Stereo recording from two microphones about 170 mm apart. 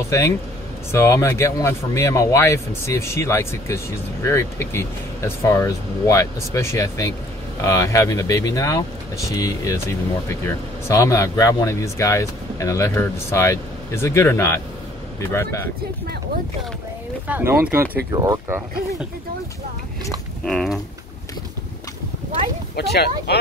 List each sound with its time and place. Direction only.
0.9 s speech: 15° left (ahead or behind)
17.3 s speech: 15° right (ahead or behind)
20.4 s speech: centre (ahead or behind)
22.8 s speech: 70° left (ahead or behind)